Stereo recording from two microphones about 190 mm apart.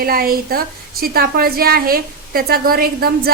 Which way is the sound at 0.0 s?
50° right (ahead or behind).